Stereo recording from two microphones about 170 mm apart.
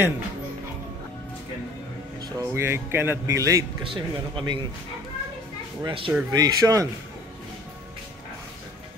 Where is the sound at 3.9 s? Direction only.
30° right (ahead or behind).